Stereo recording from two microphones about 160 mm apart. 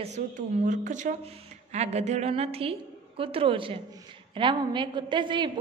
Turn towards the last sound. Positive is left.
turn(degrees=-30)  # may be behind; listen again after turning